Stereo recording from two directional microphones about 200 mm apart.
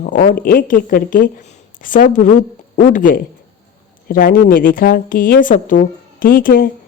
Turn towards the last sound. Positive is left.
turn(degrees=45)  # may be behind; listen again after turning